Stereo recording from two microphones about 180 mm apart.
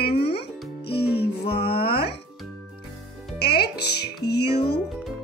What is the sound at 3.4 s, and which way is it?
Music, 65° left (ahead or behind).